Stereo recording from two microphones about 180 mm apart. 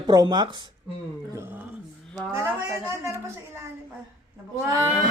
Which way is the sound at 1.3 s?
10° right (ahead or behind).